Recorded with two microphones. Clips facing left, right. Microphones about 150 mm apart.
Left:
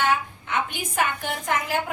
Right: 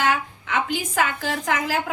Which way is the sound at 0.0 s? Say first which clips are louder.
Right 1 dB; 90° right.